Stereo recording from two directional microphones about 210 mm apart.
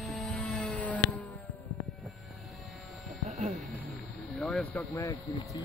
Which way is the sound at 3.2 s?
30° right (ahead or behind).